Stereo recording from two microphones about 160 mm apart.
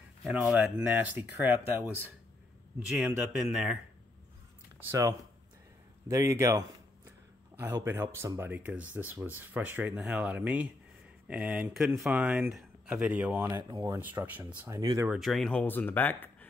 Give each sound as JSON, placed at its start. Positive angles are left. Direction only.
{"t": 0.2, "sound": "speech", "side_deg": -5}
{"t": 2.9, "sound": "speech", "side_deg": -5}
{"t": 6.0, "sound": "speech", "side_deg": -20}
{"t": 13.5, "sound": "speech", "side_deg": -25}
{"t": 13.9, "sound": "speech", "side_deg": -10}
{"t": 15.0, "sound": "speech", "side_deg": 0}